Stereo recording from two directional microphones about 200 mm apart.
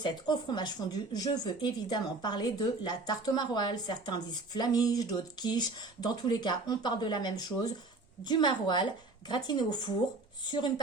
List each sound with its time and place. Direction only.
0.0 s speech: 20° left (ahead or behind)